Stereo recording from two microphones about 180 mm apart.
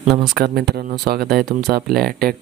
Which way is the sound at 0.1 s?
Centre (ahead or behind).